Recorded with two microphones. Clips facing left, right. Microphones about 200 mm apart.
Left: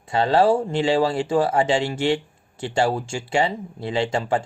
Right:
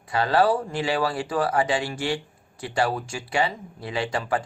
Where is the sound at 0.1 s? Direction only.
25° left (ahead or behind).